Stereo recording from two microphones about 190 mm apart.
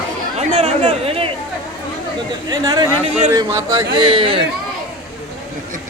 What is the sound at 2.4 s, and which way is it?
Speech, 20° right (ahead or behind).